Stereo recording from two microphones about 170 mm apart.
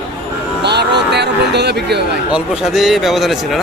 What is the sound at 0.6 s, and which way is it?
Speech, 80° right.